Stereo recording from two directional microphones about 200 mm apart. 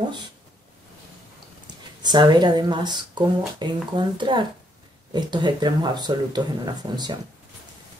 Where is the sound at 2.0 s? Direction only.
20° right (ahead or behind).